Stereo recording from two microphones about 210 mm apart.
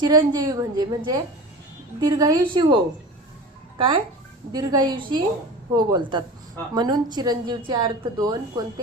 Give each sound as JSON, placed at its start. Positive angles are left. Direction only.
{"t": 0.0, "sound": "a woman's voice", "side_deg": -20}
{"t": 3.8, "sound": "a woman's voice", "side_deg": -25}